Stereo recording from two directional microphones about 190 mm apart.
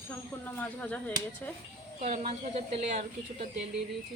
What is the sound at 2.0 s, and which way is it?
Speech, 30° right (ahead or behind).